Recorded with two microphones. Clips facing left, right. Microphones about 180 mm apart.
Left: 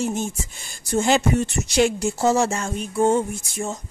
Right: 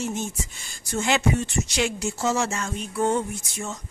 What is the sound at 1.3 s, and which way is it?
Speech, 55° left (ahead or behind).